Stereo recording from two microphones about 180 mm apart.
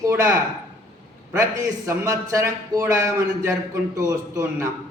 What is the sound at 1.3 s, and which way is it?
Speech, 15° right (ahead or behind).